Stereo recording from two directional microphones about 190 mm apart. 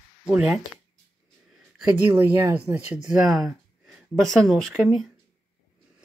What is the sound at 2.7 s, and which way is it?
Speech, 15° right (ahead or behind).